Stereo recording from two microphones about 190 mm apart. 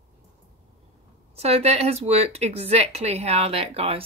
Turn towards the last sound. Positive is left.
turn(degrees=-30)  # may be behind; listen again after turning